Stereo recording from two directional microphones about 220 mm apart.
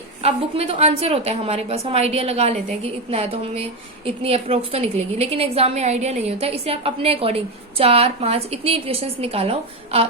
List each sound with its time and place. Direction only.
0.2 s a woman's voice: 25° right (ahead or behind)